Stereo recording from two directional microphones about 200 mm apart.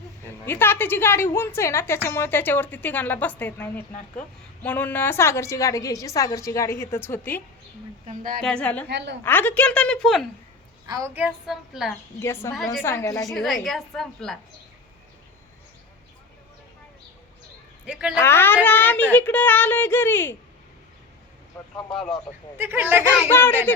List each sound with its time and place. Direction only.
0.3 s a woman's voice: 10° left (ahead or behind)
8.0 s speech: 45° right (ahead or behind)
8.4 s a woman's voice: 5° left (ahead or behind)
8.9 s a woman's voice: 60° right (ahead or behind)
9.2 s a woman's voice: 10° left (ahead or behind)
10.8 s a woman's voice: 15° right (ahead or behind); by 11.9 s centre (ahead or behind)
12.2 s a woman's voice: 10° left (ahead or behind)
13.3 s a woman's voice: centre (ahead or behind)
17.8 s a woman's voice: 5° right (ahead or behind)
18.2 s a woman's voice: 10° left (ahead or behind)
22.5 s speech: 10° right (ahead or behind)
23.3 s a woman's voice: 10° left (ahead or behind)